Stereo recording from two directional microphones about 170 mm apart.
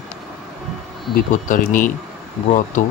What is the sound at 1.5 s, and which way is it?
Speech, 50° left (ahead or behind).